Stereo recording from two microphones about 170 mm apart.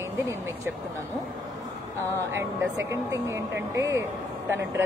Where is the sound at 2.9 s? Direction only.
15° right (ahead or behind).